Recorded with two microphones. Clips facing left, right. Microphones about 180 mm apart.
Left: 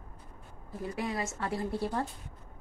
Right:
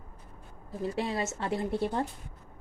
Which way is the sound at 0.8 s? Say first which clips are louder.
Right 3 dB; 25° right (ahead or behind).